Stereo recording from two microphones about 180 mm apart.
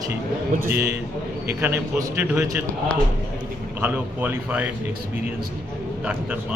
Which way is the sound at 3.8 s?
10° right (ahead or behind).